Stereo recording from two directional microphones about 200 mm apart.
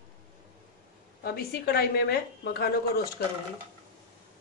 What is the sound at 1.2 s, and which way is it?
Speech, 50° left (ahead or behind).